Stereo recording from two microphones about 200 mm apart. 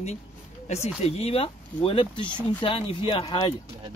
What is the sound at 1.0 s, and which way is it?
Speech, 30° left (ahead or behind).